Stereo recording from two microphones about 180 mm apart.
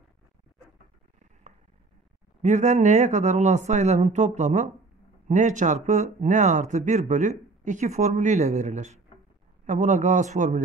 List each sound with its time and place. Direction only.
2.4 s speech: 40° right (ahead or behind)